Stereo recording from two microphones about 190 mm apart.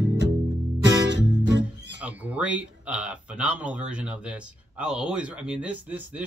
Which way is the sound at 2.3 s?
5° right (ahead or behind).